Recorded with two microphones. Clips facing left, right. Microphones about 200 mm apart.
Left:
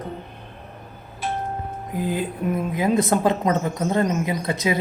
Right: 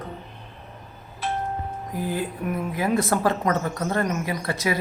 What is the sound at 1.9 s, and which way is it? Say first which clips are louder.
A woman's voice: left 3 dB; 20° left (ahead or behind).